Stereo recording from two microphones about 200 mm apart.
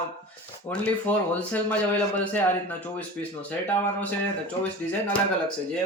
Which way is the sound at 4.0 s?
5° left (ahead or behind).